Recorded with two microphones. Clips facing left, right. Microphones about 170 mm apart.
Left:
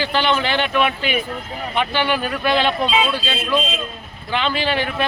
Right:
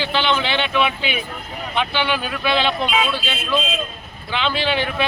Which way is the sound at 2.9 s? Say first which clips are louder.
Left 2 dB; 15° left (ahead or behind).